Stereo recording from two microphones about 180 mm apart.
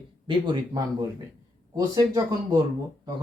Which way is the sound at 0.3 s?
25° right (ahead or behind).